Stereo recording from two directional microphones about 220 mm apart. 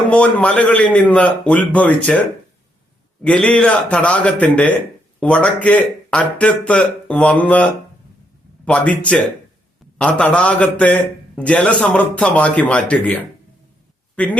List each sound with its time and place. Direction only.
0.1 s a man's voice: 5° left (ahead or behind)
3.2 s a man's voice: 5° left (ahead or behind)